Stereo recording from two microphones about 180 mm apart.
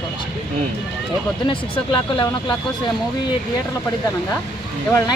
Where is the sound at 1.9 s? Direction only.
25° left (ahead or behind).